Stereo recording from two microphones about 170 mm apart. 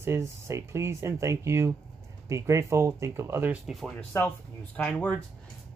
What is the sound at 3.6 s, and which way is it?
Speech, centre (ahead or behind).